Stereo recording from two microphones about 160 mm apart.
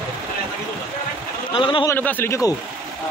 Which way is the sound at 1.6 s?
30° left (ahead or behind).